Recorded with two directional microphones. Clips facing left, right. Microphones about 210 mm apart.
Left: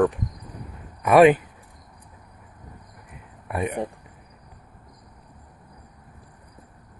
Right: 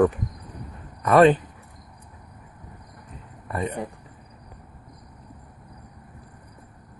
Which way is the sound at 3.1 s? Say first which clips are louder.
Left 1 dB; 10° left (ahead or behind).